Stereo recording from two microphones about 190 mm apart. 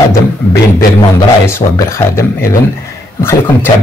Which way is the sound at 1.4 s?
15° left (ahead or behind).